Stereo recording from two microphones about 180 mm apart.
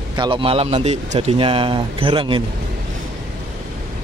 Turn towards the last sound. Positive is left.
turn(degrees=-25)  # may be behind; listen again after turning